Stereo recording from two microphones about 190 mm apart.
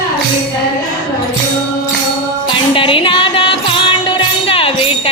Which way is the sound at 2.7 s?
25° left (ahead or behind).